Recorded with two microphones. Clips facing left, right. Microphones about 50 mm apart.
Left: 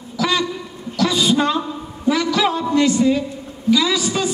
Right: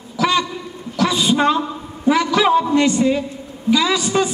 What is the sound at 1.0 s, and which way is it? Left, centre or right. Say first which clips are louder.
A man's voice: right 1 dB; right.